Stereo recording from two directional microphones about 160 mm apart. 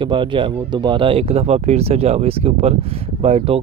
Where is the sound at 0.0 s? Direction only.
30° right (ahead or behind).